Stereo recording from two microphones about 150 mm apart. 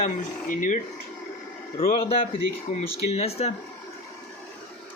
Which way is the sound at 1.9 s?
40° left (ahead or behind).